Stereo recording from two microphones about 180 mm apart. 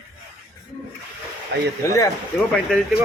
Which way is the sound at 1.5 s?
75° right (ahead or behind).